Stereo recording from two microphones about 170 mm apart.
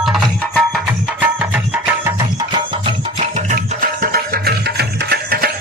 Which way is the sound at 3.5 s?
55° right (ahead or behind).